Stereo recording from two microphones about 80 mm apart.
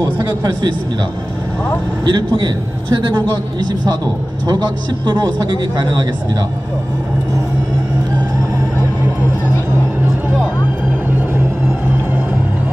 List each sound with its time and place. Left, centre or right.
2.0 s speech: right